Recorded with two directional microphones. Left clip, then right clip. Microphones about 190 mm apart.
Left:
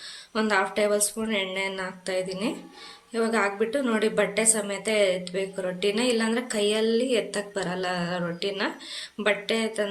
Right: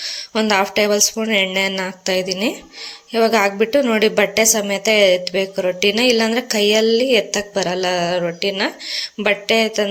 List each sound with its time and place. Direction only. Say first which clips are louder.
0.0 s a woman's voice: right 8 dB; 35° right (ahead or behind)